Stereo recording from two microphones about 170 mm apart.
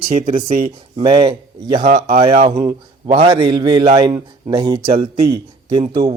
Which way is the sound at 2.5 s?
20° right (ahead or behind).